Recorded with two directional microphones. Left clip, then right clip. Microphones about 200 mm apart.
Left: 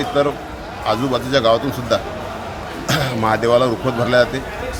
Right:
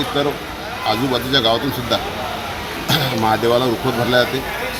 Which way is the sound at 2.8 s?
20° left (ahead or behind).